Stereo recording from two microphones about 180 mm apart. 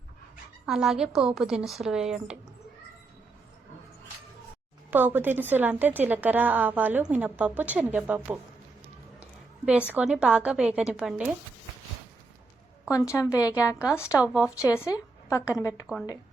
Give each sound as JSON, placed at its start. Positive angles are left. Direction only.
{"t": 0.6, "sound": "speech", "side_deg": 0}
{"t": 4.9, "sound": "a woman's voice", "side_deg": -10}
{"t": 12.9, "sound": "a woman's voice", "side_deg": 20}
{"t": 14.2, "sound": "a woman's voice", "side_deg": -5}
{"t": 14.6, "sound": "a woman's voice", "side_deg": 15}